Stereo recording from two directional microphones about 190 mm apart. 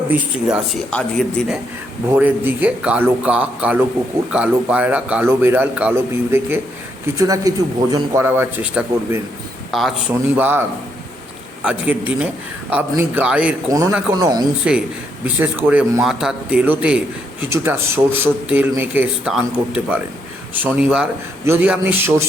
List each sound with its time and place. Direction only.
0.1 s speech: 5° right (ahead or behind)
2.0 s a man's voice: 10° right (ahead or behind)
7.2 s a man's voice: 20° right (ahead or behind)
14.6 s a man's voice: 5° right (ahead or behind)